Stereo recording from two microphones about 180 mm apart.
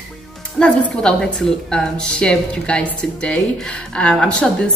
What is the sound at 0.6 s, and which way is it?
A woman's voice, 5° left (ahead or behind).